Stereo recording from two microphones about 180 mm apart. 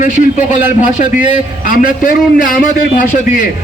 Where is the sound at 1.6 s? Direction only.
50° left (ahead or behind).